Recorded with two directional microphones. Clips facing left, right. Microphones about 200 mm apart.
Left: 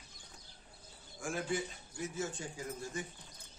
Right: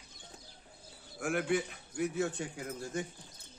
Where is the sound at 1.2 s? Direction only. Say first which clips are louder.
Right 5 dB; 65° right (ahead or behind).